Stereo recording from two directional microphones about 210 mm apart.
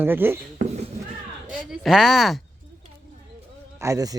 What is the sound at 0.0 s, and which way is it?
Speech, 10° right (ahead or behind).